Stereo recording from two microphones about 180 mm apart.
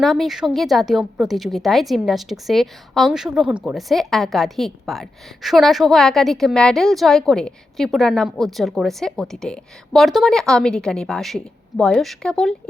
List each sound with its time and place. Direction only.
0.0 s a woman's voice: centre (ahead or behind)